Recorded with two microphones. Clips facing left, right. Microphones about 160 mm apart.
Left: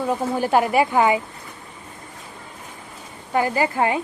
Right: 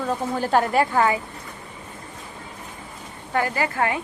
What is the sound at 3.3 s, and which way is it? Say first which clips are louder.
Speech: left 3 dB; 20° left (ahead or behind).